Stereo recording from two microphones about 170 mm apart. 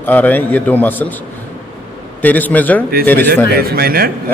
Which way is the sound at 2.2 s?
10° left (ahead or behind).